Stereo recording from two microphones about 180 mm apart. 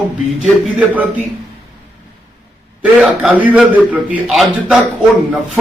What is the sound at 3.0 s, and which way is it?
A man's voice, 5° right (ahead or behind).